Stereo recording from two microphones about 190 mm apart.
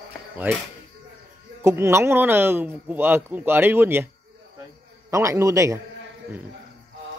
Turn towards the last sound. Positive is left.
turn(degrees=-15)  # may be behind; listen again after turning